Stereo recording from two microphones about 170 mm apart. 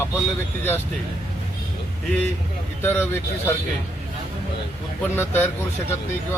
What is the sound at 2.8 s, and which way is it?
Speech, 10° left (ahead or behind).